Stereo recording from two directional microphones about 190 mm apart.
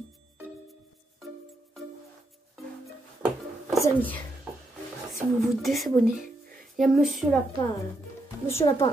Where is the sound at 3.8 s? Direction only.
10° left (ahead or behind).